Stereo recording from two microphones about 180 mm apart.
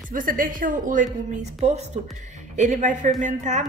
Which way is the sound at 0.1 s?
50° right (ahead or behind).